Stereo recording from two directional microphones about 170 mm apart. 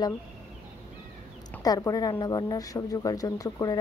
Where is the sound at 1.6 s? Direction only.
20° left (ahead or behind).